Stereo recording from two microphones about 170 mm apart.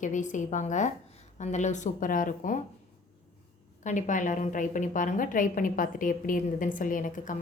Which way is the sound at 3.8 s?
50° left (ahead or behind).